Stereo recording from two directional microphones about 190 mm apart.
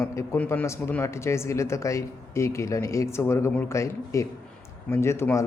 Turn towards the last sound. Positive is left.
turn(degrees=15)  # may be behind; listen again after turning